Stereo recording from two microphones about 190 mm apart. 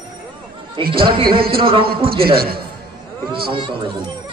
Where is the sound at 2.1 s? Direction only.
55° right (ahead or behind).